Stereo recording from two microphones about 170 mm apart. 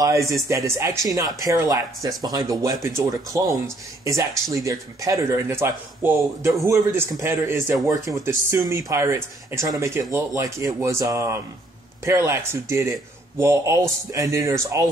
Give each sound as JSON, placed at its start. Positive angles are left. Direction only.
{"t": 0.0, "sound": "speech", "side_deg": -20}